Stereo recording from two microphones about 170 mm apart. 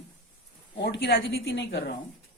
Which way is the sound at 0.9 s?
90° left.